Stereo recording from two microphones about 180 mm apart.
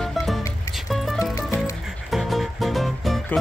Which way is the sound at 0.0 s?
Centre (ahead or behind).